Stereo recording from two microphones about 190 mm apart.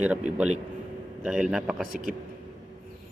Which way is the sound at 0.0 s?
5° right (ahead or behind).